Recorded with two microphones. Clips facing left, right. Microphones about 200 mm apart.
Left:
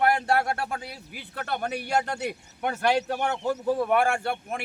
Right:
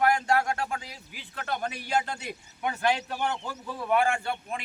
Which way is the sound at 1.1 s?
60° left (ahead or behind).